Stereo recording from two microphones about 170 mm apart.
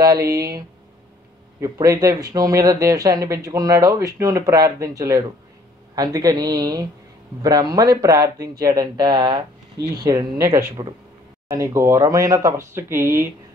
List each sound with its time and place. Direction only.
0.0 s speech: 20° right (ahead or behind)